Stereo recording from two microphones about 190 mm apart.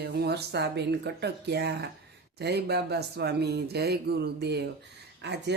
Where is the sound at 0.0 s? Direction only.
60° right (ahead or behind).